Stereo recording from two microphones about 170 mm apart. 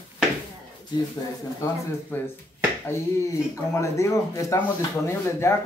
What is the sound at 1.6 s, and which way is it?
Speech, 15° left (ahead or behind).